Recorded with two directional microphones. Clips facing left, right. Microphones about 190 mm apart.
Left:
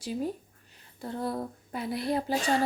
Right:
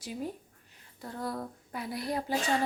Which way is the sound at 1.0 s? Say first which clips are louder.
Left 4 dB; 25° left (ahead or behind).